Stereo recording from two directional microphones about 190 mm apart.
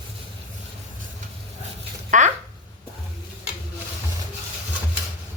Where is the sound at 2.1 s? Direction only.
40° right (ahead or behind).